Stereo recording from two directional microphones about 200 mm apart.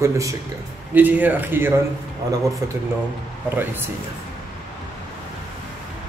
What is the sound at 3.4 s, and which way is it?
Speech, 10° right (ahead or behind).